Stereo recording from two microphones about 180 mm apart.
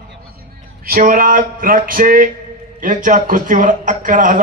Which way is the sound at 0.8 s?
55° right (ahead or behind).